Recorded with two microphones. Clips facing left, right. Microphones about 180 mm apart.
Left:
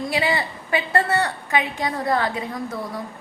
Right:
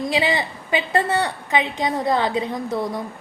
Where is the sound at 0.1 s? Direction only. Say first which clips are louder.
Right 1 dB; 20° right (ahead or behind).